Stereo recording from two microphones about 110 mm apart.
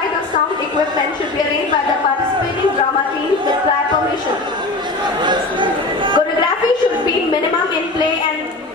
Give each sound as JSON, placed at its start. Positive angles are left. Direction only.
{"t": 5.2, "sound": "chatter", "side_deg": -45}